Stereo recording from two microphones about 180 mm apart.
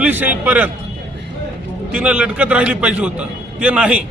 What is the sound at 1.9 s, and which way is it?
A man's voice, 5° right (ahead or behind).